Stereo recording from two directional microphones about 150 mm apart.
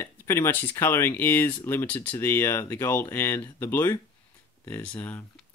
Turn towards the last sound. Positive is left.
turn(degrees=10)  # may be behind; listen again after turning